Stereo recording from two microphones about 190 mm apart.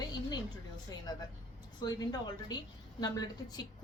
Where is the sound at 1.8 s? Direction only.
20° left (ahead or behind).